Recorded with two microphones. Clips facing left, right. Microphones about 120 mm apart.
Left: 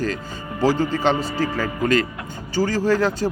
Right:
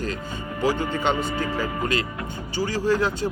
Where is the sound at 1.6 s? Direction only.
45° left (ahead or behind).